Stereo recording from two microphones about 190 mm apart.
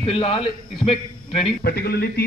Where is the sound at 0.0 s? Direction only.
30° left (ahead or behind).